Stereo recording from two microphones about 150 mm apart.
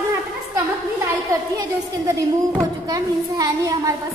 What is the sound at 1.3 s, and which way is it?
A woman's voice, 20° right (ahead or behind).